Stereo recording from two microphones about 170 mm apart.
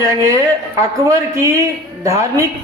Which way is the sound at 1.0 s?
20° right (ahead or behind).